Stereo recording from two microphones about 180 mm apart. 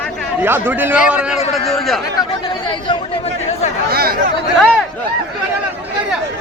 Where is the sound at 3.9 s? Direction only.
55° right (ahead or behind).